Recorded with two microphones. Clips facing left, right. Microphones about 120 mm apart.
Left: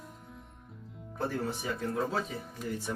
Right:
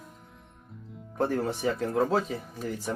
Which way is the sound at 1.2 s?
65° right (ahead or behind).